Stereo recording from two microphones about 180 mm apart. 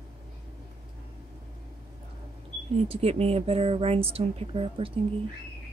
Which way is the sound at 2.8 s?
35° right (ahead or behind).